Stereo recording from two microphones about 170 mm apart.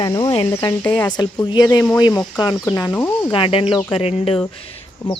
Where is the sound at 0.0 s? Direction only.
25° left (ahead or behind).